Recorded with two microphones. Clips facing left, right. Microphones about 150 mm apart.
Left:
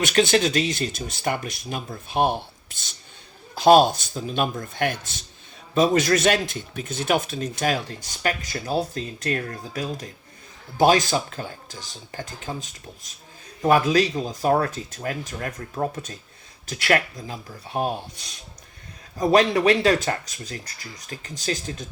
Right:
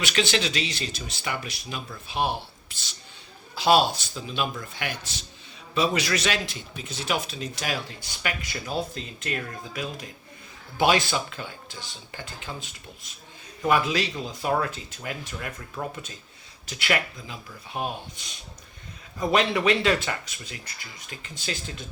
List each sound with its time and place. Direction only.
0.0 s a man's voice: 50° left (ahead or behind)
19.1 s speech: 40° left (ahead or behind)